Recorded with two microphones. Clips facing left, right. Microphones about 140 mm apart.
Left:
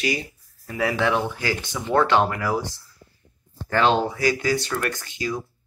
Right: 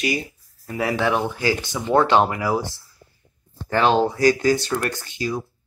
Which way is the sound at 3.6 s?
20° right (ahead or behind).